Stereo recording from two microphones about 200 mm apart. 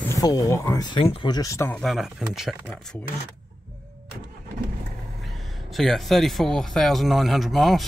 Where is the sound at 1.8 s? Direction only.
Centre (ahead or behind).